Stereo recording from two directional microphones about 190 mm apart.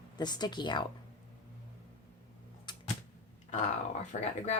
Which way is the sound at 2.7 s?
25° left (ahead or behind).